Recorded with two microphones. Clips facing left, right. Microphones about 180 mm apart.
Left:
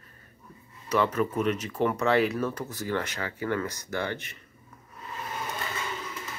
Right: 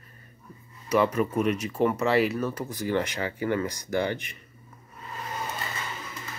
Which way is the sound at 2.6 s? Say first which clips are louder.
Right 3 dB; 15° right (ahead or behind).